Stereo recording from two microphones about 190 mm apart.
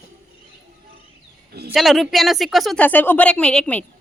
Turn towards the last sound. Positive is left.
turn(degrees=5)  # may be behind; listen again after turning